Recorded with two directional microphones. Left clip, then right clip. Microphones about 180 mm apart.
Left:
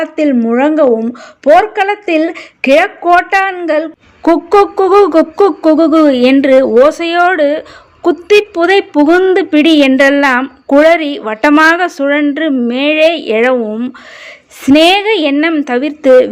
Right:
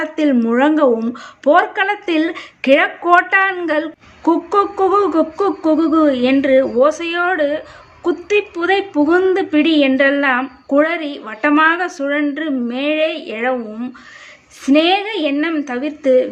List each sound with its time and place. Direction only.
0.0 s a woman's voice: 25° left (ahead or behind); by 16.1 s 45° left (ahead or behind)